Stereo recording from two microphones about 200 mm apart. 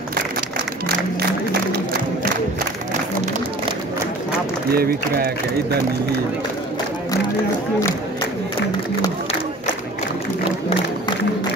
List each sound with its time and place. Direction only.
4.7 s a man's voice: 50° right (ahead or behind)